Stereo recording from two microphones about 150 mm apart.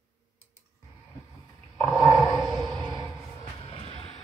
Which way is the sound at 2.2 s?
30° right (ahead or behind).